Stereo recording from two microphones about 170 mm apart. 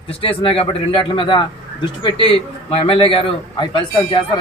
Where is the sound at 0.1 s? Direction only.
35° left (ahead or behind).